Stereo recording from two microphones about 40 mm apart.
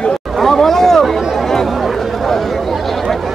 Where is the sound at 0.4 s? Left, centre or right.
Centre.